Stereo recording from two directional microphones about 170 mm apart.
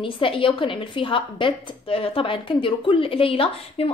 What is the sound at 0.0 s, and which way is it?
A woman's voice, 30° left (ahead or behind).